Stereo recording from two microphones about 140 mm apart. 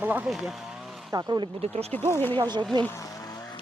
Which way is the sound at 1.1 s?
30° right (ahead or behind).